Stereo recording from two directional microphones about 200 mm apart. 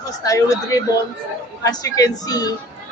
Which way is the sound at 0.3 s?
15° left (ahead or behind).